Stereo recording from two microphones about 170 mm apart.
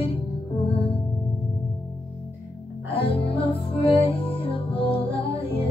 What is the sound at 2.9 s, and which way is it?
Music, 35° left (ahead or behind).